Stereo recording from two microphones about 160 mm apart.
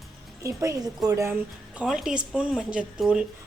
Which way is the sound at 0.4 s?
20° right (ahead or behind).